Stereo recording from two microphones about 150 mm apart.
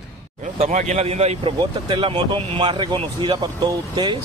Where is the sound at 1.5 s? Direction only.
35° right (ahead or behind).